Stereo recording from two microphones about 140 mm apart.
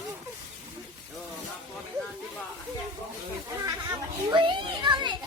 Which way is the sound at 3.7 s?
25° right (ahead or behind).